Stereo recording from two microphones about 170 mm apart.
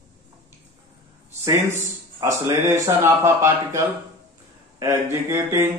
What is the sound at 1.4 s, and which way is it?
Speech, 15° right (ahead or behind).